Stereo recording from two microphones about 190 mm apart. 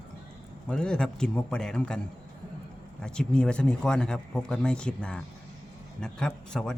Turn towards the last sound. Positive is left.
turn(degrees=5)  # may be behind; listen again after turning